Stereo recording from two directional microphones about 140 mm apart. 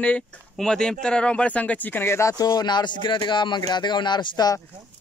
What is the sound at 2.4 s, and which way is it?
Speech, 30° left (ahead or behind).